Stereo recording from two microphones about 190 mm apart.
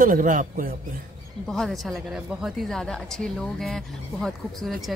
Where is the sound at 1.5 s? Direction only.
Centre (ahead or behind).